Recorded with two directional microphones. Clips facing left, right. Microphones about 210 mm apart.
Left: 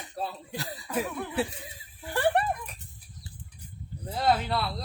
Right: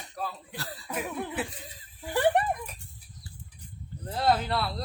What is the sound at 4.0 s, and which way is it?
Speech, 10° left (ahead or behind).